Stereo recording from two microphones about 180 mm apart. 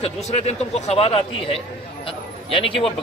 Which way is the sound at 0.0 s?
35° left (ahead or behind).